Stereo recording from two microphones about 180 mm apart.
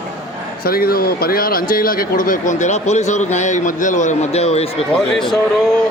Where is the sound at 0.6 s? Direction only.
55° left (ahead or behind); by 4.8 s 35° left (ahead or behind).